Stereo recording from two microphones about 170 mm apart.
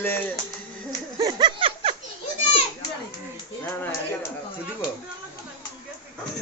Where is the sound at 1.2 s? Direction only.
25° right (ahead or behind).